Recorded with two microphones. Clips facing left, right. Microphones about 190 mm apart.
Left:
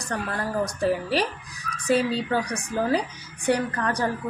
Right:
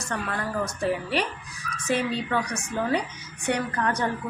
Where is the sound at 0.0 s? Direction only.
35° left (ahead or behind).